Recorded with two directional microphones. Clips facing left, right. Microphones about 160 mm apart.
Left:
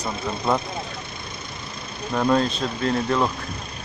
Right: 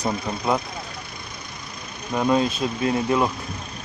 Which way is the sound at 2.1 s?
10° right (ahead or behind).